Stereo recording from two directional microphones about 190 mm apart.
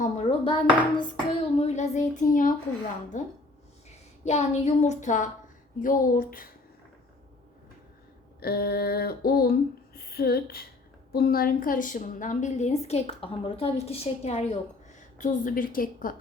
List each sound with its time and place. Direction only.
0.0 s dishes: 35° left (ahead or behind)
0.9 s a woman's voice: 30° left (ahead or behind); by 6.5 s 50° left (ahead or behind)
8.4 s a sound: 55° left (ahead or behind)
11.1 s a woman's voice: 50° left (ahead or behind); by 14.4 s 30° left (ahead or behind)
14.9 s a woman's voice: 40° left (ahead or behind)